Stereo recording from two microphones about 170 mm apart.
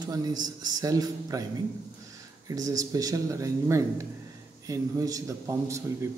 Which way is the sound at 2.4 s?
20° right (ahead or behind).